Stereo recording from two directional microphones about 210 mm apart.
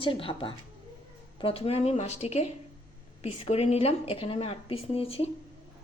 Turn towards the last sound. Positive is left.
turn(degrees=25)  # may be behind; listen again after turning